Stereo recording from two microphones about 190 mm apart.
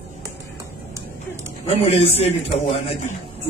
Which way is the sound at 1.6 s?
35° left (ahead or behind).